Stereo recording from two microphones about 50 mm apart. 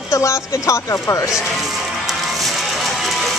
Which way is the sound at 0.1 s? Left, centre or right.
Left.